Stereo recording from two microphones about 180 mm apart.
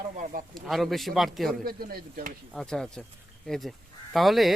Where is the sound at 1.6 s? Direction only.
55° right (ahead or behind).